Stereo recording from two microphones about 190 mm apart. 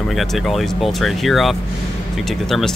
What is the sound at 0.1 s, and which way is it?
Speech, centre (ahead or behind).